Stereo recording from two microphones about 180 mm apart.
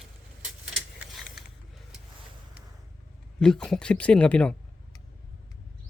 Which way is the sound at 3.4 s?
5° left (ahead or behind).